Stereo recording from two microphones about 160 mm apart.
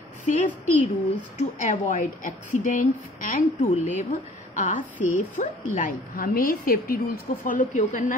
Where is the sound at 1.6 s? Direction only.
50° left (ahead or behind).